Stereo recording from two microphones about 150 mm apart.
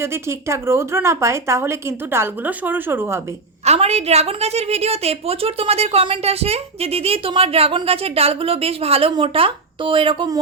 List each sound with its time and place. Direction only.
0.0 s speech: 15° right (ahead or behind)
3.7 s a woman's voice: 45° right (ahead or behind)